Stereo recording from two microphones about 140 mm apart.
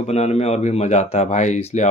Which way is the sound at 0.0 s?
50° left (ahead or behind).